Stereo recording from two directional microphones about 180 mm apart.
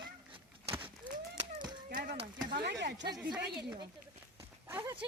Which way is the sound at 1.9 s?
55° right (ahead or behind).